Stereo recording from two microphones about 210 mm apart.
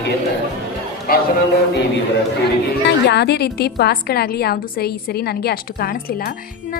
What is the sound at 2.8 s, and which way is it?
A woman's voice, 55° left (ahead or behind).